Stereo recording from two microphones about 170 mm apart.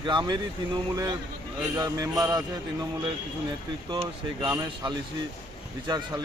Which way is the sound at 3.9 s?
25° right (ahead or behind).